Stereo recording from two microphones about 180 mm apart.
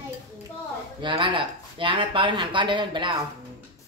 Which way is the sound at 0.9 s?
25° right (ahead or behind).